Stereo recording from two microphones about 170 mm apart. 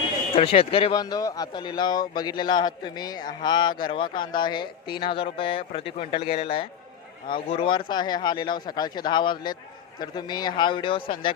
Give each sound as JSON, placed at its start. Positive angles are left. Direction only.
{"t": 0.3, "sound": "speech", "side_deg": 35}